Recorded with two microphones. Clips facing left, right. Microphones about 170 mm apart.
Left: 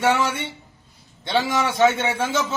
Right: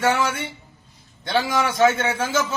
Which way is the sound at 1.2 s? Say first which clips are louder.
Even; 25° left (ahead or behind).